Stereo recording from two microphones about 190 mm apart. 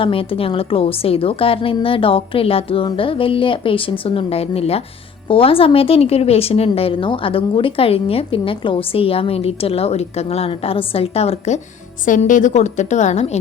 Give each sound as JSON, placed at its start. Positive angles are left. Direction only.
{"t": 0.0, "sound": "a woman's voice", "side_deg": 30}